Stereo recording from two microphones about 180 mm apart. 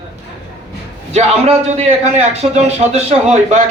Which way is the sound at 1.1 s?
35° right (ahead or behind).